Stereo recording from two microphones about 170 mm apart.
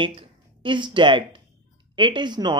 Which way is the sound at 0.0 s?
30° right (ahead or behind).